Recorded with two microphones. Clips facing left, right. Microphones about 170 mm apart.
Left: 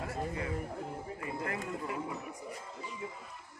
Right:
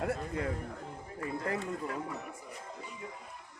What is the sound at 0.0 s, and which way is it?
Music, 55° right (ahead or behind).